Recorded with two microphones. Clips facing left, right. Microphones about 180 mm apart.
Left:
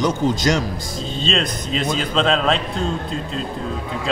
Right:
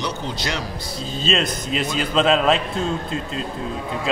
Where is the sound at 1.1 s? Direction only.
5° right (ahead or behind).